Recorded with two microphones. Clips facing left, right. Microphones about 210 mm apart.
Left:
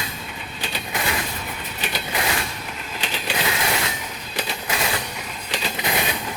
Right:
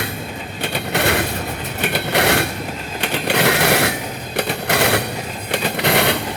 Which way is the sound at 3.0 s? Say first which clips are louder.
Right 9 dB; 65° right (ahead or behind).